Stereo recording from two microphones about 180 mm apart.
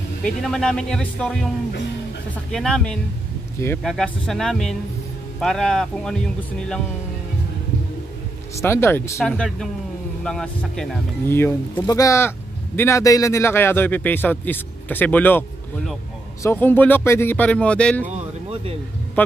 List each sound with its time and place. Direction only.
0.2 s speech: 5° left (ahead or behind)
2.5 s speech: 5° left (ahead or behind)
8.5 s speech: 15° left (ahead or behind)
9.2 s speech: 5° left (ahead or behind)
16.4 s speech: 10° left (ahead or behind)
18.0 s a sound: 35° right (ahead or behind)
19.2 s a man's voice: 10° left (ahead or behind)